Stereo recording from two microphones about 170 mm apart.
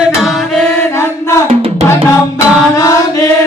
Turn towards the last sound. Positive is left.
turn(degrees=20)  # may be behind; listen again after turning